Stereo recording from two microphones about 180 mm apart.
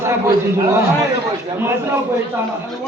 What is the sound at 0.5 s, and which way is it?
Speech, 15° right (ahead or behind).